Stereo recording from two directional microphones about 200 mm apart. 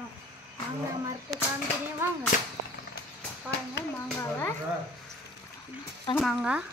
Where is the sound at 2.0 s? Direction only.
10° right (ahead or behind).